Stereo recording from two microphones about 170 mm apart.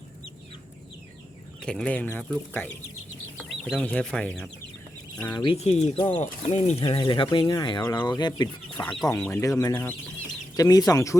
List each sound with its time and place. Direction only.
1.6 s speech: 5° left (ahead or behind)
3.6 s speech: 5° left (ahead or behind)
5.3 s speech: 25° left (ahead or behind)
5.5 s speech: 40° left (ahead or behind)
6.8 s speech: 30° left (ahead or behind)
8.8 s speech: 5° left (ahead or behind)